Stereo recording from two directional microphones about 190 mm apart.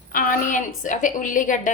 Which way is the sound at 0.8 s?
40° left (ahead or behind).